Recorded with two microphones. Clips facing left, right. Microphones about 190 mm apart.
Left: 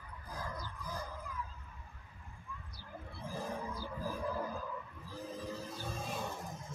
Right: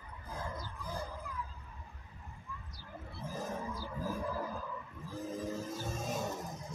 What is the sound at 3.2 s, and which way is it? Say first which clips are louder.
Roaring cats: right 1 dB; 45° right (ahead or behind).